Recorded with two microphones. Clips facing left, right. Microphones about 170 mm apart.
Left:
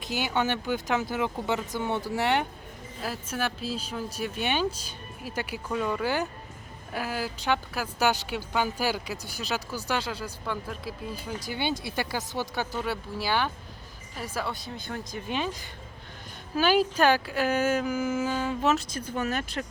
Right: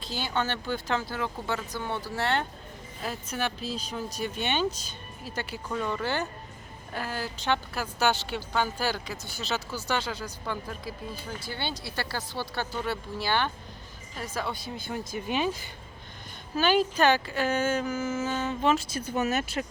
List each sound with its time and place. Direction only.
0.0 s speech: 15° left (ahead or behind)
3.0 s speech: 5° left (ahead or behind)
11.4 s speech: 15° left (ahead or behind); by 15.4 s 5° right (ahead or behind)
16.6 s speech: 5° left (ahead or behind)